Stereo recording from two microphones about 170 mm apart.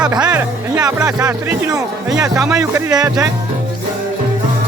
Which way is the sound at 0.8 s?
20° right (ahead or behind).